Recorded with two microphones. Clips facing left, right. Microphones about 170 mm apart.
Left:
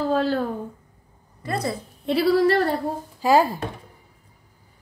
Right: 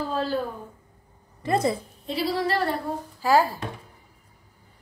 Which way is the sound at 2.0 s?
65° left (ahead or behind).